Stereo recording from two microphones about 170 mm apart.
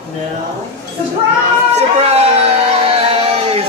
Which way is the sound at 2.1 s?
40° right (ahead or behind).